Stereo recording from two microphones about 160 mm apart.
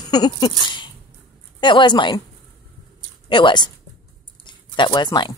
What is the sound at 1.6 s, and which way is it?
Speech, 30° left (ahead or behind).